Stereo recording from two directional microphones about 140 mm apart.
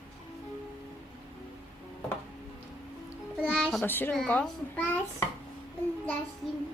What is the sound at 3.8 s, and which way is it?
A child's voice, 15° left (ahead or behind).